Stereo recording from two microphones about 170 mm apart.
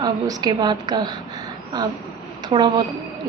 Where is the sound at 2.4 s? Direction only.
25° right (ahead or behind).